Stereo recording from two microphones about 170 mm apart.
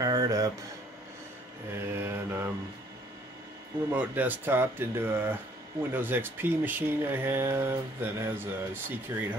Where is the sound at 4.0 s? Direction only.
10° right (ahead or behind).